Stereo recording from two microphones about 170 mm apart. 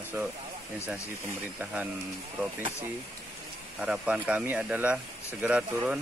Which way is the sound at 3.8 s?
5° right (ahead or behind).